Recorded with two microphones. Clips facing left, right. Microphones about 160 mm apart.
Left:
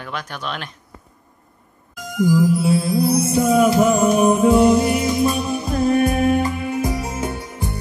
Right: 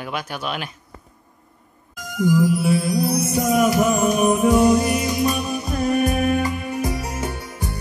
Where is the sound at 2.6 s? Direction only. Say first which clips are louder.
Left 2 dB; 25° left (ahead or behind).